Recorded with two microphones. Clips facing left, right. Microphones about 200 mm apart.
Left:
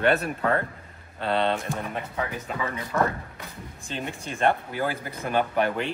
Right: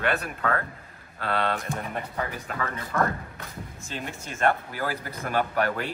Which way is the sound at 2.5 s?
15° left (ahead or behind).